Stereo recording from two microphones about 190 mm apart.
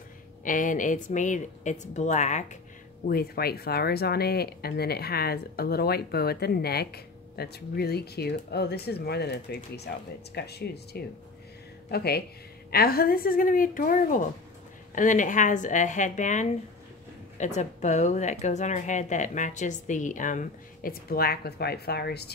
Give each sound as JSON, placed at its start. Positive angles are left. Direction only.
{"t": 0.4, "sound": "speech", "side_deg": 45}
{"t": 3.1, "sound": "a woman's voice", "side_deg": 55}